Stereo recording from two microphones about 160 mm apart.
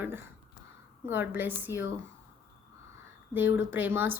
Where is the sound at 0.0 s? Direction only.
15° right (ahead or behind).